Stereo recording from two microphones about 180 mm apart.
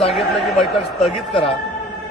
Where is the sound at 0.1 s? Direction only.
Centre (ahead or behind).